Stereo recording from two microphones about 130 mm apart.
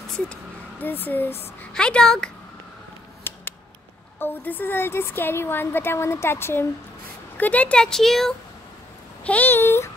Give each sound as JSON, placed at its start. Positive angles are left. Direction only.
{"t": 0.1, "sound": "speech", "side_deg": 10}
{"t": 3.3, "sound": "scissors", "side_deg": 15}
{"t": 4.2, "sound": "a woman's voice", "side_deg": 15}